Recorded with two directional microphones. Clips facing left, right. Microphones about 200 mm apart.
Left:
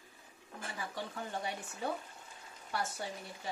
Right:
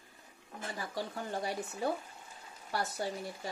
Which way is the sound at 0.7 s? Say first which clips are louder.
Right 3 dB; 40° right (ahead or behind).